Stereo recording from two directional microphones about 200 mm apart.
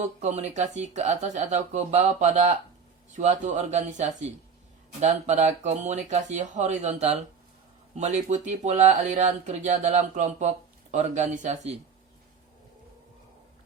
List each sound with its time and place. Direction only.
0.2 s speech: 35° right (ahead or behind)